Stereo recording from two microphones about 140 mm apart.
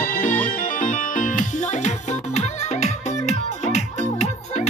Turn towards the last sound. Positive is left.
turn(degrees=50)  # may be behind; listen again after turning